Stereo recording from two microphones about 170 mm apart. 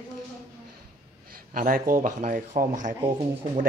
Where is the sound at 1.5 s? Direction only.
55° right (ahead or behind).